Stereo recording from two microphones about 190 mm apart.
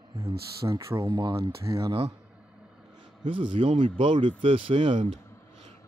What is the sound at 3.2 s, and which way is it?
Speech, 25° right (ahead or behind).